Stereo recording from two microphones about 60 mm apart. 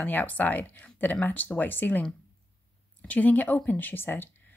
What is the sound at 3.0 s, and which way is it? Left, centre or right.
A woman's voice, left.